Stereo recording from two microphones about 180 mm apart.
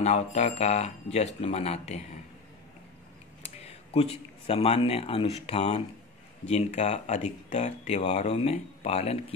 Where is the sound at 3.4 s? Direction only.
35° left (ahead or behind).